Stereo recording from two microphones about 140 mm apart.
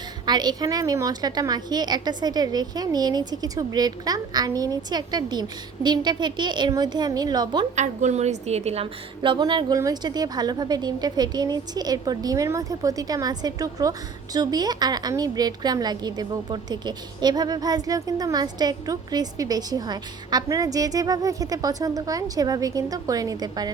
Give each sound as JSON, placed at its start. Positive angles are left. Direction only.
{"t": 0.3, "sound": "a woman's voice", "side_deg": -30}
{"t": 7.8, "sound": "a woman's voice", "side_deg": -55}